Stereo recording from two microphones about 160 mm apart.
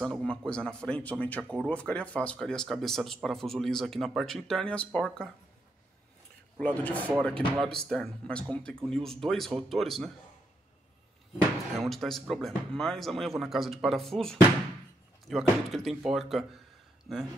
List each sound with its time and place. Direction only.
0.0 s speech: 5° left (ahead or behind)
6.6 s speech: 10° left (ahead or behind)
11.8 s speech: centre (ahead or behind)